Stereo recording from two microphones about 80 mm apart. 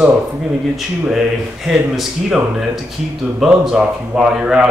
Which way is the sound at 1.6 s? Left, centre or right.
Centre.